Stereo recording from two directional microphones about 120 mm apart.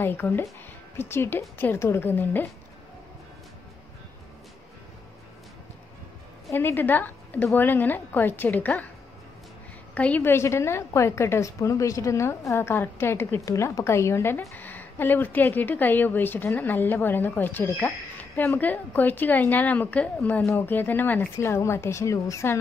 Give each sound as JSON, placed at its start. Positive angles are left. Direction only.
{"t": 0.0, "sound": "a woman's voice", "side_deg": 15}
{"t": 6.5, "sound": "a woman's voice", "side_deg": 15}
{"t": 9.9, "sound": "a woman's voice", "side_deg": 10}